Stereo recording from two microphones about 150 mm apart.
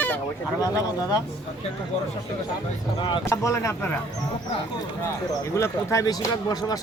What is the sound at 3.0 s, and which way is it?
Speech, 30° left (ahead or behind).